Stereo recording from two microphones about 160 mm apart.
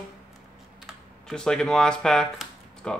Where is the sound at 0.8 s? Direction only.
5° left (ahead or behind).